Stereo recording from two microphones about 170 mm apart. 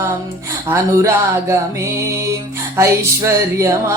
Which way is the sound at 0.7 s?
15° right (ahead or behind).